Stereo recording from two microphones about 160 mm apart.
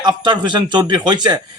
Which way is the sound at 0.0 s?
30° right (ahead or behind).